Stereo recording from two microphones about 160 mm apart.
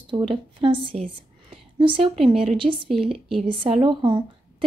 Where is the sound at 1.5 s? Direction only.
35° right (ahead or behind).